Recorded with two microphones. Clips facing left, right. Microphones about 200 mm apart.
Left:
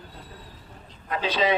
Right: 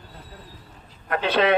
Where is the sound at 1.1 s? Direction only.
60° right (ahead or behind).